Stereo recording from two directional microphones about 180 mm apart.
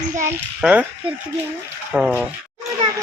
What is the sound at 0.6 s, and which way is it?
Speech, 5° right (ahead or behind).